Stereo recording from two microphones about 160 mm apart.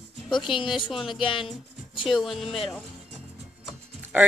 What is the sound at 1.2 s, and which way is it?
Speech, 30° left (ahead or behind).